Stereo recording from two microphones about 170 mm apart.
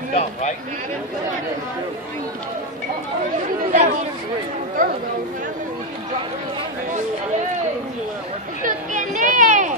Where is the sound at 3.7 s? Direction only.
50° right (ahead or behind).